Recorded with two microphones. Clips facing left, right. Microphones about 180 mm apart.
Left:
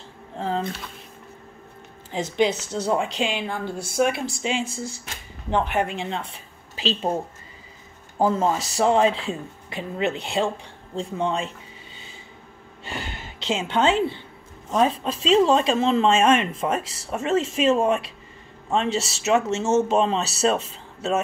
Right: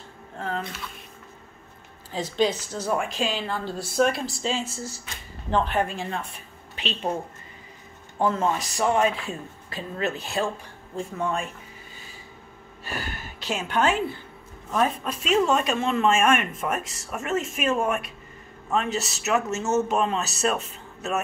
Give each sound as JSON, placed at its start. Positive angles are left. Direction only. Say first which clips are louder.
{"t": 0.4, "sound": "speech", "louder": "left 4 dB", "side_deg": 30}
{"t": 2.1, "sound": "a woman's voice", "louder": "left 2 dB", "side_deg": 20}
{"t": 8.4, "sound": "speech", "louder": "left 3 dB", "side_deg": 30}
{"t": 12.8, "sound": "gasp", "louder": "even", "side_deg": 25}
{"t": 14.7, "sound": "speech", "louder": "left 3 dB", "side_deg": 25}